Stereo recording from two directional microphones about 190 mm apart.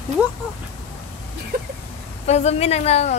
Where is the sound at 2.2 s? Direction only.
35° left (ahead or behind).